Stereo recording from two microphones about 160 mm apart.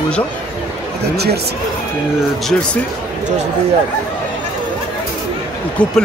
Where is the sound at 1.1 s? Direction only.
90° right.